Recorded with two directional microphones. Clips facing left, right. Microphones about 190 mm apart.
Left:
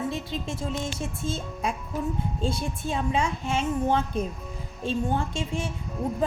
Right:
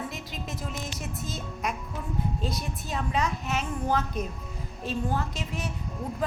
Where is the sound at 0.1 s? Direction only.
30° left (ahead or behind).